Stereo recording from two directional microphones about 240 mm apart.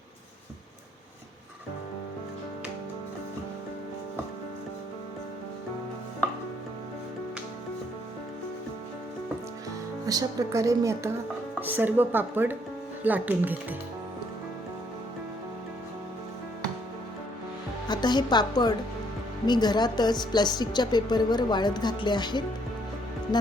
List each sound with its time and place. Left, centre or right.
10.1 s a woman's voice: centre
17.8 s a woman's voice: centre